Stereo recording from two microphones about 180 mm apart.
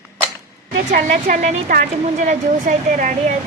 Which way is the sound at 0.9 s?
40° right (ahead or behind).